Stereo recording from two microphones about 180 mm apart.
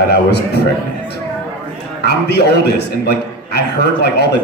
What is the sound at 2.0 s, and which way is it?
A man's voice, 65° left (ahead or behind).